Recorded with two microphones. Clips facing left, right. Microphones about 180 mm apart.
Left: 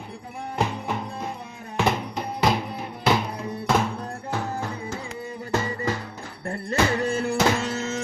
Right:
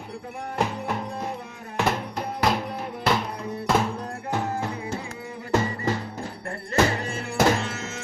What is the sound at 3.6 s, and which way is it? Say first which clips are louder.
Music: even; centre (ahead or behind).